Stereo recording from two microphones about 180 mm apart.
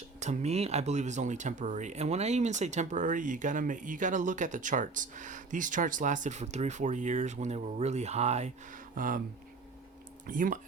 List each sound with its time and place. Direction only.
0.2 s speech: 40° right (ahead or behind)
10.2 s speech: 50° right (ahead or behind)